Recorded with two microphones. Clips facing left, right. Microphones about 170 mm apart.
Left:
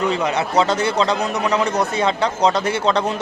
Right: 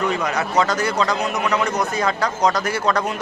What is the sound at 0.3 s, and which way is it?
A man's voice, 25° left (ahead or behind).